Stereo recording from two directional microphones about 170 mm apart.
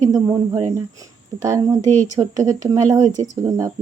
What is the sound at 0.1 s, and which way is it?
Speech, 20° right (ahead or behind).